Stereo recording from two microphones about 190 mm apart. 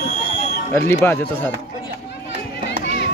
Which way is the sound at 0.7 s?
10° left (ahead or behind).